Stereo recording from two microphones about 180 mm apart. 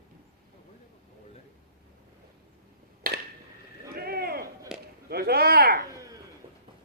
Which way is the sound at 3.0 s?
55° right (ahead or behind).